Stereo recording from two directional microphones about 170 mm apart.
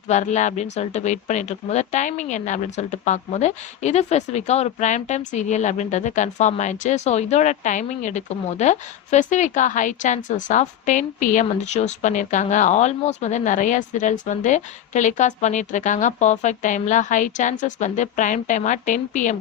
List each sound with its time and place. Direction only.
0.1 s speech: 45° left (ahead or behind)